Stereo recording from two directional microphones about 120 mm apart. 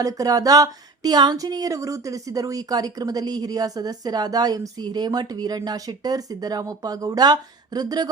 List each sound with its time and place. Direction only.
0.0 s speech: 30° right (ahead or behind)